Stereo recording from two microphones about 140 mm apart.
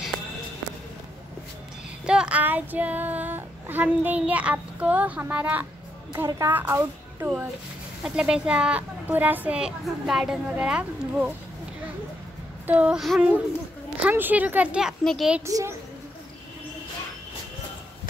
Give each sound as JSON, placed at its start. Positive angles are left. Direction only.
{"t": 2.0, "sound": "child singing", "side_deg": -5}
{"t": 6.1, "sound": "a woman's voice", "side_deg": -20}
{"t": 12.6, "sound": "a woman's voice", "side_deg": -10}
{"t": 15.4, "sound": "a child's voice", "side_deg": -20}